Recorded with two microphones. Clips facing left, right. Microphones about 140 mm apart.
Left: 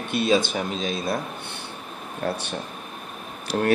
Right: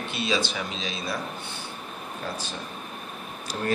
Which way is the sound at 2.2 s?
65° left (ahead or behind).